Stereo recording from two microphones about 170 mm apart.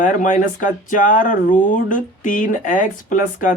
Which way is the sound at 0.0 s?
50° left (ahead or behind).